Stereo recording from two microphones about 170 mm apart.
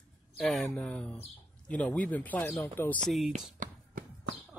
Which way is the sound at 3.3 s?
50° right (ahead or behind).